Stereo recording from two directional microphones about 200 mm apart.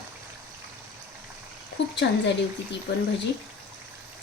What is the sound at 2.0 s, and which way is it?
Speech, 60° left (ahead or behind).